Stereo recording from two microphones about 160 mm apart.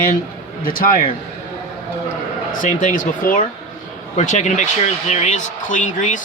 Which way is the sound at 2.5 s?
55° left (ahead or behind).